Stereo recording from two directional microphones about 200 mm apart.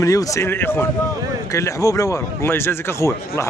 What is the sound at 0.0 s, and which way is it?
A man's voice, 15° left (ahead or behind).